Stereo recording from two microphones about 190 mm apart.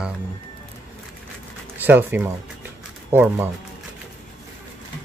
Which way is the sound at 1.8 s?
10° right (ahead or behind).